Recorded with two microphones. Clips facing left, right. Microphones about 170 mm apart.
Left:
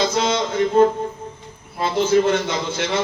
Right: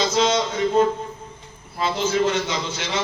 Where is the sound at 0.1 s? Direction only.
55° left (ahead or behind).